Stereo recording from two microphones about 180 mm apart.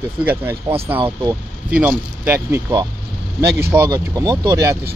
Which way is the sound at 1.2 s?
10° right (ahead or behind).